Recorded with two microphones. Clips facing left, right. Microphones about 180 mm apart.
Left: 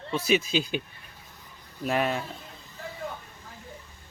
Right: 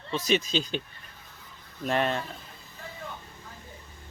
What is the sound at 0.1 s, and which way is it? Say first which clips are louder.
Speech: left 1 dB; 10° left (ahead or behind).